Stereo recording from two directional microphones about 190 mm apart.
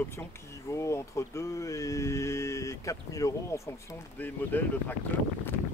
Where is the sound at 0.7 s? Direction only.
15° left (ahead or behind).